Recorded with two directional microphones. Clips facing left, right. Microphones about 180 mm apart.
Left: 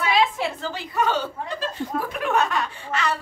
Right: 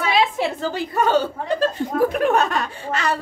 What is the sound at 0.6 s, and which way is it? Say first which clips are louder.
A woman's voice: right 4 dB; 45° right (ahead or behind).